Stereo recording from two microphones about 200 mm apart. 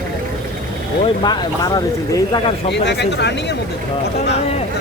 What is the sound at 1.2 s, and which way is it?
Speech, 20° left (ahead or behind).